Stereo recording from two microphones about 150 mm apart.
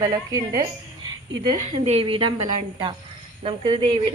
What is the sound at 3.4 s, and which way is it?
Speech, 35° right (ahead or behind).